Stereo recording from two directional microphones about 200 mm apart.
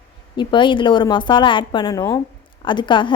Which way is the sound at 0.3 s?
25° left (ahead or behind).